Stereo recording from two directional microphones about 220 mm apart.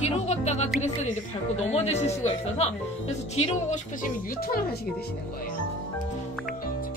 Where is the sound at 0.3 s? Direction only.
30° left (ahead or behind).